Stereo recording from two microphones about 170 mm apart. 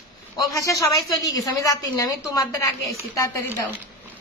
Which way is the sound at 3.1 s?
20° left (ahead or behind).